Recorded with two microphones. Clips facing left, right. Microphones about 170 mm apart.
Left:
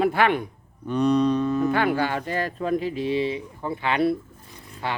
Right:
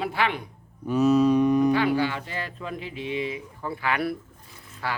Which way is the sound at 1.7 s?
50° left (ahead or behind).